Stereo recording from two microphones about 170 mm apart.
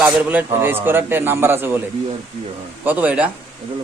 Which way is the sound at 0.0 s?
10° right (ahead or behind).